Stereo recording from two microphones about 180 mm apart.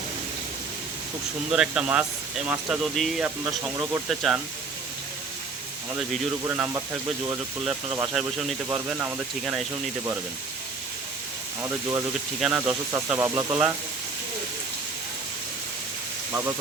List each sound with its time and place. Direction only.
1.5 s speech: 5° right (ahead or behind)
3.4 s speech: 15° right (ahead or behind)
4.1 s speech: centre (ahead or behind)
6.5 s speech: 10° right (ahead or behind)
8.1 s speech: centre (ahead or behind)
11.6 s speech: 15° right (ahead or behind)